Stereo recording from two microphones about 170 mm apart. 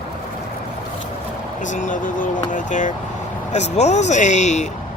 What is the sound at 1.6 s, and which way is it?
Speech, 50° left (ahead or behind).